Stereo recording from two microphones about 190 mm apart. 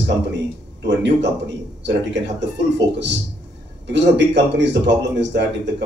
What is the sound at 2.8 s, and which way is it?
A man's voice, 65° right (ahead or behind).